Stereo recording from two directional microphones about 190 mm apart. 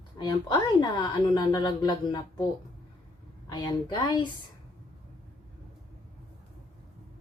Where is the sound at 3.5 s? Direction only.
20° left (ahead or behind).